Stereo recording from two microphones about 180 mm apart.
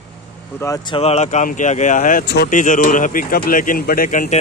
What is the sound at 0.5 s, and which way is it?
Speech, 20° left (ahead or behind).